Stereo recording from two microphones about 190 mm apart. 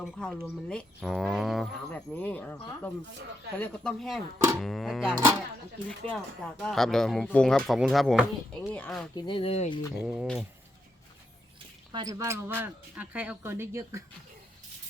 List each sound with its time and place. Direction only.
0.0 s speech: 5° left (ahead or behind)
5.1 s speech: 15° right (ahead or behind)
6.1 s speech: 5° left (ahead or behind)
9.1 s speech: 25° left (ahead or behind)
10.0 s speech: 5° right (ahead or behind)
11.9 s speech: 20° right (ahead or behind)